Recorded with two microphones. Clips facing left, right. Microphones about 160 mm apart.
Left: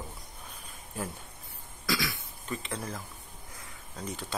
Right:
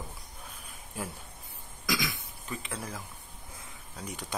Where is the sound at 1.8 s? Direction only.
15° right (ahead or behind).